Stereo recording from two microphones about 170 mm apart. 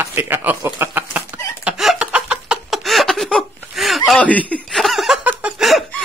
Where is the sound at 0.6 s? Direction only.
15° right (ahead or behind).